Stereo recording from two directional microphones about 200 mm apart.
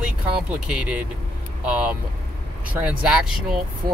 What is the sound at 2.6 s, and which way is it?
Speech, 5° right (ahead or behind).